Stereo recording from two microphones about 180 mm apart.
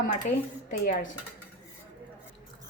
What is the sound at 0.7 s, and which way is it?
Speech, 45° left (ahead or behind).